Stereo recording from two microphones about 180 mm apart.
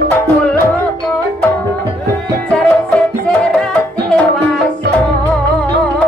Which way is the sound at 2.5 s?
5° left (ahead or behind).